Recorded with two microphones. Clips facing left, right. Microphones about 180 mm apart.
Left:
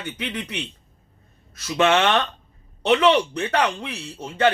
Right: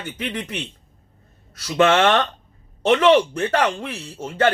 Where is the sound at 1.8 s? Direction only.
45° right (ahead or behind).